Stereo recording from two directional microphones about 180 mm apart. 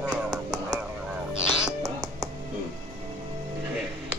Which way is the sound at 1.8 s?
20° right (ahead or behind).